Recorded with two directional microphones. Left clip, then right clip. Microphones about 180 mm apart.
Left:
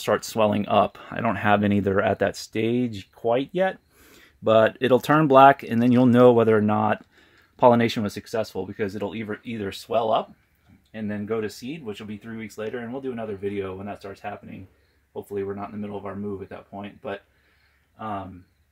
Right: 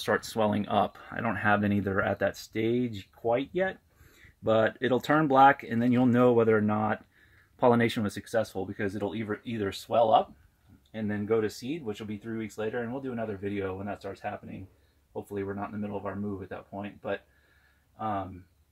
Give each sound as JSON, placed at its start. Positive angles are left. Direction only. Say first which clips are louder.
{"t": 0.0, "sound": "speech", "louder": "left 6 dB", "side_deg": 40}
{"t": 10.9, "sound": "speech", "louder": "even", "side_deg": 15}
{"t": 15.3, "sound": "speech", "louder": "left 5 dB", "side_deg": 15}